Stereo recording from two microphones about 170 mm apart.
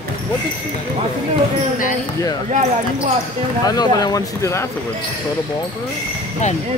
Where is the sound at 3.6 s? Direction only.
25° left (ahead or behind).